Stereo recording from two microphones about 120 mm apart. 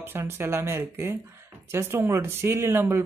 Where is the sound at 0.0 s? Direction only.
20° right (ahead or behind).